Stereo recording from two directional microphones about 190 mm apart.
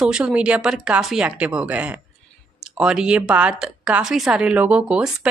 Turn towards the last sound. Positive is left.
turn(degrees=-5)  # may be behind; listen again after turning